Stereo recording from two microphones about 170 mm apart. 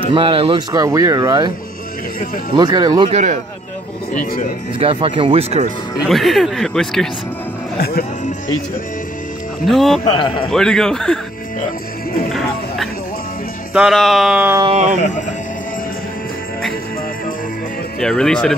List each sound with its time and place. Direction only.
0.0 s speech: 30° right (ahead or behind)
2.5 s speech: 25° right (ahead or behind)
3.1 s speech: 45° right (ahead or behind)
4.1 s speech: 50° left (ahead or behind)
4.7 s speech: 30° right (ahead or behind)
6.0 s speech: centre (ahead or behind)
9.7 s speech: centre (ahead or behind)
10.0 s speech: 30° left (ahead or behind)
10.5 s speech: 5° left (ahead or behind)
12.3 s music: centre (ahead or behind)
13.7 s speech: centre (ahead or behind)
14.6 s speech: 40° right (ahead or behind)
18.0 s speech: 5° left (ahead or behind)